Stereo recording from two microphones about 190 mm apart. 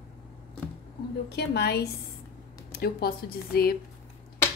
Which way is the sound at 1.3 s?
60° left (ahead or behind).